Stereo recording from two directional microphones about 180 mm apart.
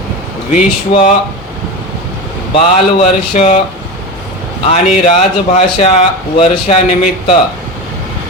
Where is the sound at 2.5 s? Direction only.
35° left (ahead or behind).